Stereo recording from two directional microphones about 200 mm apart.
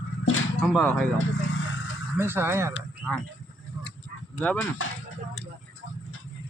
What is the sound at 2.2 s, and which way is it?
Speech, 10° right (ahead or behind).